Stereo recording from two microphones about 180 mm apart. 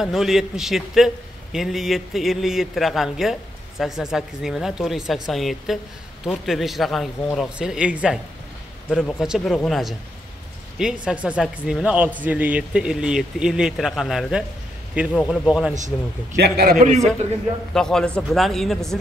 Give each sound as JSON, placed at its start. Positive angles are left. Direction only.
{"t": 0.0, "sound": "a man's voice", "side_deg": 0}
{"t": 16.3, "sound": "a man's voice", "side_deg": -60}
{"t": 17.7, "sound": "a man's voice", "side_deg": 5}